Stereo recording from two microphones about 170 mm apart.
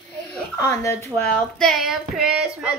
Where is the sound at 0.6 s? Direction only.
15° left (ahead or behind).